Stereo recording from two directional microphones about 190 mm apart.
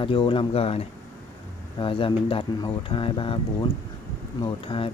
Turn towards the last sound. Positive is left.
turn(degrees=30)  # may be behind; listen again after turning